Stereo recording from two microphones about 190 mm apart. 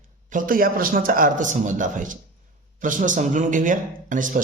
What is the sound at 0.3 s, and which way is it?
Speech, 45° right (ahead or behind).